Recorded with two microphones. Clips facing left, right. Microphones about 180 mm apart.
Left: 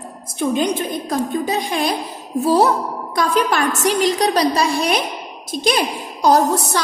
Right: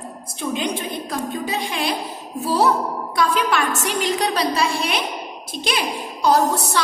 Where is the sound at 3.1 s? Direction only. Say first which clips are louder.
Left 2 dB; 40° left (ahead or behind).